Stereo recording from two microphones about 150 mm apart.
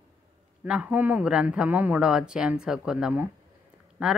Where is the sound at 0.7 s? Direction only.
5° right (ahead or behind).